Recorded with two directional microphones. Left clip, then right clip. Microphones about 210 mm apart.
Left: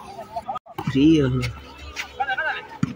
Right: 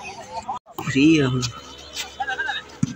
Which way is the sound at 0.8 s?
5° left (ahead or behind).